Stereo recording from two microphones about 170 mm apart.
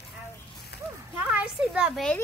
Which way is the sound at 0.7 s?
75° left (ahead or behind).